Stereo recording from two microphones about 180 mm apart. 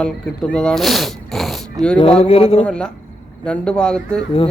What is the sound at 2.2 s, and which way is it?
Speech, 35° left (ahead or behind).